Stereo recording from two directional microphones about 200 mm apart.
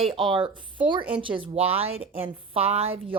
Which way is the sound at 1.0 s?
5° right (ahead or behind).